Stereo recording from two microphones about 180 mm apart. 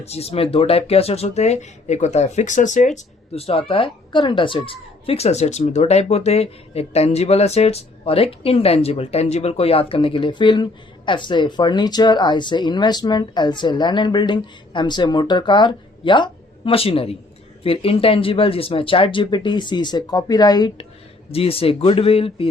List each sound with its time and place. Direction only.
0.0 s speech: 35° left (ahead or behind)